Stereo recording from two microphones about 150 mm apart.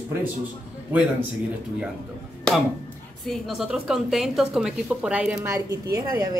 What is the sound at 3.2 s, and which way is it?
A woman's voice, centre (ahead or behind).